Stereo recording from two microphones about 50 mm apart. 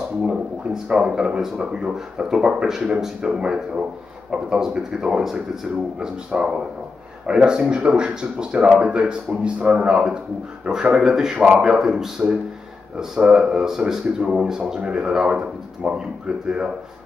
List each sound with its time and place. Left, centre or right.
0.8 s speech: centre